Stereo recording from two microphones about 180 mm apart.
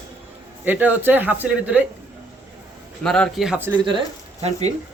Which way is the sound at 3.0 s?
5° left (ahead or behind).